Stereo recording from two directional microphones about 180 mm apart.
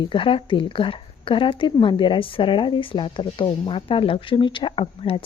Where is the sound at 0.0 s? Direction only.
30° left (ahead or behind).